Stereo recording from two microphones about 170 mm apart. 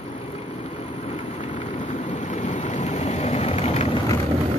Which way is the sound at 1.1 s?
40° left (ahead or behind).